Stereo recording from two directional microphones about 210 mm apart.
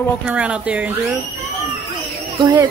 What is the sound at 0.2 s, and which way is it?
Speech, 5° right (ahead or behind).